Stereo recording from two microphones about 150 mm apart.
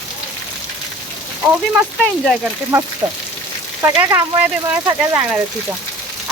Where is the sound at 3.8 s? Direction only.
20° right (ahead or behind).